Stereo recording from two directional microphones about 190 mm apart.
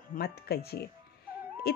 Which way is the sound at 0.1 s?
55° left (ahead or behind).